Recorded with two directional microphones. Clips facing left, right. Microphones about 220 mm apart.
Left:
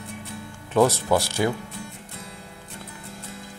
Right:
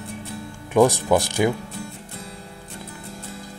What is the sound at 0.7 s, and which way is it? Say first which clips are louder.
Speech: right 3 dB; 15° right (ahead or behind).